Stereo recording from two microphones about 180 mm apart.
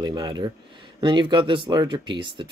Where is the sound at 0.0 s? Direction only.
20° right (ahead or behind).